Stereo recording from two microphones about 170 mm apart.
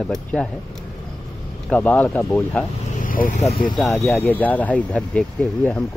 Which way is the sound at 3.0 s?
55° left (ahead or behind).